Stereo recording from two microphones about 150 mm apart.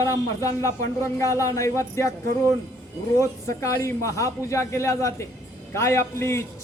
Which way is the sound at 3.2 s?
20° left (ahead or behind).